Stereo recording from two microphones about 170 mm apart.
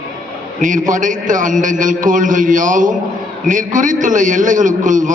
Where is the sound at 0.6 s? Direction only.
50° right (ahead or behind).